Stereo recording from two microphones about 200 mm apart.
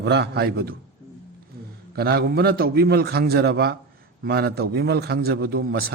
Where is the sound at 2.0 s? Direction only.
55° right (ahead or behind).